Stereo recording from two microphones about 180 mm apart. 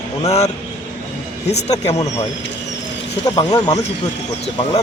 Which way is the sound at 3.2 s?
20° left (ahead or behind).